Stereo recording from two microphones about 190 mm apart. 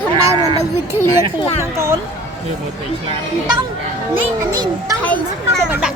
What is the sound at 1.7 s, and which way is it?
Speech, 15° right (ahead or behind).